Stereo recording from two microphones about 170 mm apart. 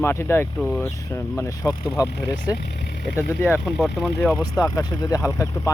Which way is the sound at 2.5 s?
75° left (ahead or behind).